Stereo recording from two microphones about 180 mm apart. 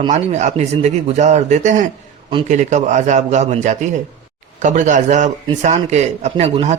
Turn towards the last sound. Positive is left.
turn(degrees=-35)  # may be behind; listen again after turning